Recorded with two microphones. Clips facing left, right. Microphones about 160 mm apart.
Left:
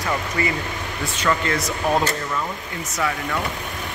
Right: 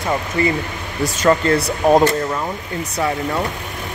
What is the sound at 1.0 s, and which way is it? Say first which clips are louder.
Speech: right 7 dB; 40° right (ahead or behind).